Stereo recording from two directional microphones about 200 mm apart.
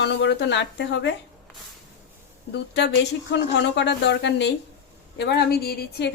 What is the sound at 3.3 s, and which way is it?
A woman's voice, 65° left (ahead or behind).